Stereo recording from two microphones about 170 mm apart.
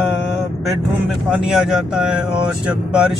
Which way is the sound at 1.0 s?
Centre (ahead or behind).